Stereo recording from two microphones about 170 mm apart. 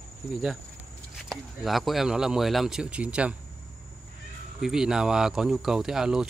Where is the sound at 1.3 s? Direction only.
Centre (ahead or behind).